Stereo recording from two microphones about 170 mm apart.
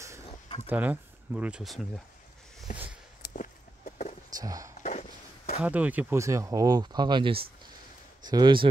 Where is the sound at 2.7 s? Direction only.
50° left (ahead or behind).